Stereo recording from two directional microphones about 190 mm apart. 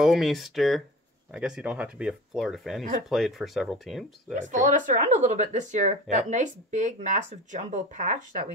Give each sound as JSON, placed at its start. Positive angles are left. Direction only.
{"t": 0.0, "sound": "speech", "side_deg": 0}
{"t": 4.5, "sound": "speech", "side_deg": -40}